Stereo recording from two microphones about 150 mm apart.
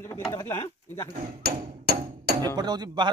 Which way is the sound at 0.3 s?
15° left (ahead or behind).